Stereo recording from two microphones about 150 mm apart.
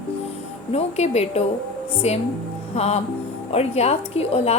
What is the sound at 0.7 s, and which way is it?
Speech, 45° left (ahead or behind).